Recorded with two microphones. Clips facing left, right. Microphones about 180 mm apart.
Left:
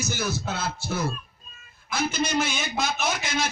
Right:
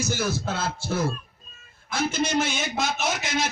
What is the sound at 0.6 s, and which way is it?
Speech, 30° right (ahead or behind).